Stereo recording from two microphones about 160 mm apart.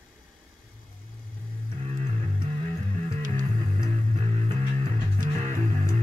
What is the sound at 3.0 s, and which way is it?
Music, 50° right (ahead or behind).